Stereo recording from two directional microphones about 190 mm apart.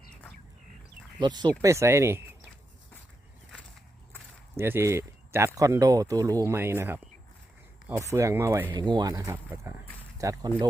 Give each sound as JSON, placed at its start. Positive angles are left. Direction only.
{"t": 0.1, "sound": "a sound", "side_deg": 5}
{"t": 1.2, "sound": "speech", "side_deg": -25}
{"t": 4.5, "sound": "speech", "side_deg": -15}